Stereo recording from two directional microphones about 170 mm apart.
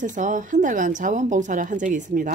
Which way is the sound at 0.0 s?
50° right (ahead or behind).